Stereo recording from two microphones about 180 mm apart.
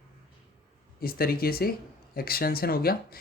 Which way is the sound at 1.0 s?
55° left (ahead or behind).